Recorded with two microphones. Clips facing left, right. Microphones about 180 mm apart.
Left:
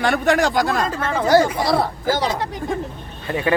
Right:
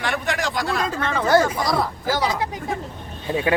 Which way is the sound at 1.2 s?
25° left (ahead or behind).